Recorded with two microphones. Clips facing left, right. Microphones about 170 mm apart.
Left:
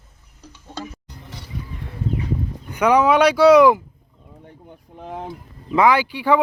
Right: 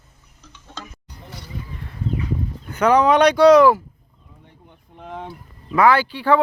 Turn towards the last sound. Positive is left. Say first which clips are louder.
# even
turn(degrees=15)  # may be behind; listen again after turning